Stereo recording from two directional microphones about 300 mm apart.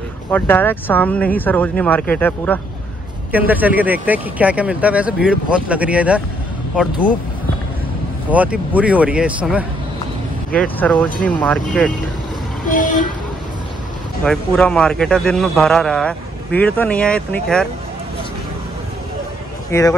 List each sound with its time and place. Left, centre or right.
0.3 s a man's voice: centre
3.3 s a man's voice: centre
8.3 s a man's voice: centre
12.6 s vehicle: left
14.2 s a man's voice: centre
19.7 s speech: centre